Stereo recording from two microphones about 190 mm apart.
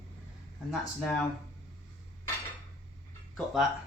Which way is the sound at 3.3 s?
Centre (ahead or behind).